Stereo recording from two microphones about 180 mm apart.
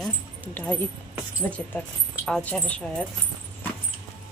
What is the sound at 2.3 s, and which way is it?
Speech, 5° left (ahead or behind).